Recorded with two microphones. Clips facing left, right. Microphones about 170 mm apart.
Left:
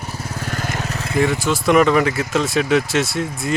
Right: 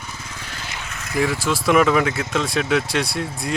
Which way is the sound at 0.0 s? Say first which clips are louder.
Left 8 dB; 35° left (ahead or behind).